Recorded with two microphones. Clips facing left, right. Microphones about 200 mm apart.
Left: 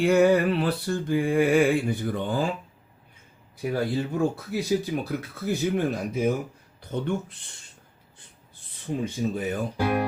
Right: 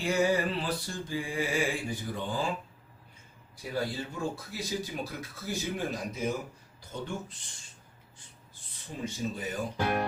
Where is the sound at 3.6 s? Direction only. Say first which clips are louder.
Left 10 dB; 60° left (ahead or behind).